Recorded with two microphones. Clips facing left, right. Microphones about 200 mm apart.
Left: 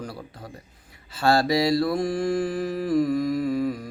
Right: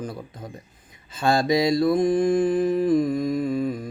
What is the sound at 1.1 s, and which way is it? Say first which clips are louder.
Mantra: even; 20° right (ahead or behind).